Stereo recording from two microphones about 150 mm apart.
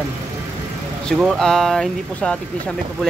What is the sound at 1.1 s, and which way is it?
Speech, 5° left (ahead or behind).